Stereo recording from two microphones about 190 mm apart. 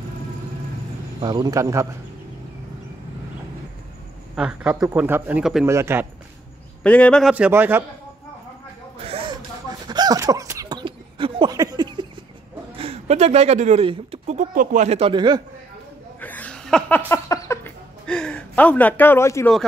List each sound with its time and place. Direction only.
1.2 s speech: 25° right (ahead or behind)
4.4 s speech: 5° right (ahead or behind)
5.7 s speech: 15° right (ahead or behind)
6.8 s a man's voice: 5° left (ahead or behind); by 7.8 s 10° right (ahead or behind)
8.9 s a sound: 30° right (ahead or behind)
12.7 s speech: 30° right (ahead or behind)
16.2 s a sound: 10° left (ahead or behind)